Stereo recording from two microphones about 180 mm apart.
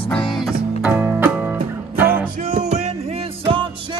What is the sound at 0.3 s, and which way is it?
Music, 5° right (ahead or behind).